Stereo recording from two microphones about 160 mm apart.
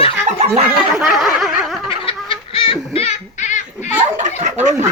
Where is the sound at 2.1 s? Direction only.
35° left (ahead or behind).